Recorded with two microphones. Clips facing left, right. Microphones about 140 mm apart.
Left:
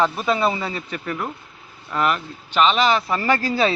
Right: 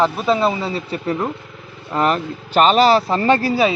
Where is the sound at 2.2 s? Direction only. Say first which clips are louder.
Right 9 dB; 90° right.